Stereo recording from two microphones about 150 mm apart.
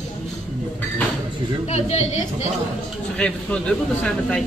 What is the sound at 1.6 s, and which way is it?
Speech, 45° left (ahead or behind).